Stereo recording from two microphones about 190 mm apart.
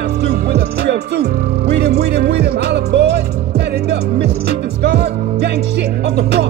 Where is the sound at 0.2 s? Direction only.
60° right (ahead or behind).